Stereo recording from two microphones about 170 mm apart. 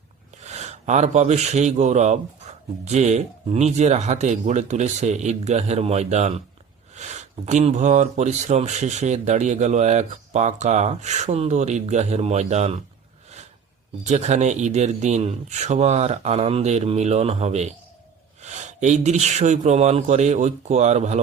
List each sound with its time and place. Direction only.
0.4 s speech: 40° right (ahead or behind)
14.0 s speech: 45° right (ahead or behind)